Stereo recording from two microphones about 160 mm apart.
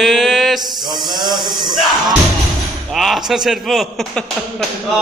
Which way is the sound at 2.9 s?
Centre (ahead or behind).